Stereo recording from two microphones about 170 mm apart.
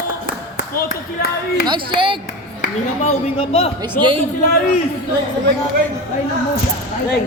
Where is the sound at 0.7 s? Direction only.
60° left (ahead or behind).